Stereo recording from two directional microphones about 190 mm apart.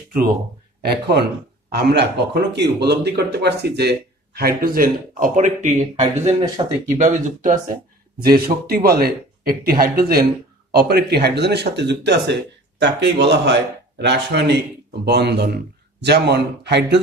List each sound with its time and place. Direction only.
0.8 s speech: 60° right (ahead or behind); by 6.0 s 40° right (ahead or behind)
6.4 s speech: 20° right (ahead or behind)
7.0 s speech: 40° right (ahead or behind)
8.2 s speech: 55° right (ahead or behind)